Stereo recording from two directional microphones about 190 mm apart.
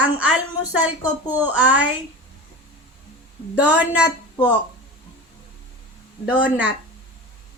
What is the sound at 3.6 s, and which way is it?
Speech, 10° right (ahead or behind).